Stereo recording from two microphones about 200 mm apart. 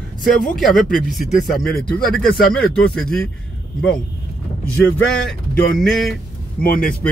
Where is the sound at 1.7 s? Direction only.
50° left (ahead or behind).